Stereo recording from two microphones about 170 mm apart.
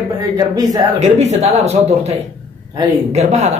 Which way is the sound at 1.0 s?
40° right (ahead or behind).